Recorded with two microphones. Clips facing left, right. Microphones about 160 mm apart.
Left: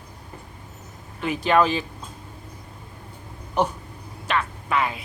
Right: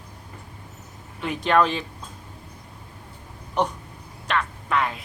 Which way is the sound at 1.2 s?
Centre (ahead or behind).